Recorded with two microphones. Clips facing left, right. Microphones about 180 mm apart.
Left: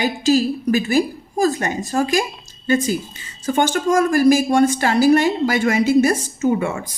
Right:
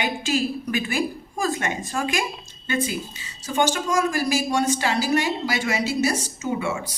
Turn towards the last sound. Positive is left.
turn(degrees=55)  # may be behind; listen again after turning